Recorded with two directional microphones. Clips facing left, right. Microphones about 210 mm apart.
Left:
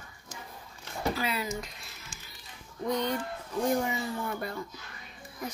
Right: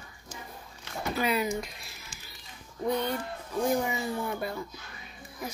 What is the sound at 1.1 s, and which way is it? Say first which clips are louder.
Speech: right 5 dB; 15° right (ahead or behind).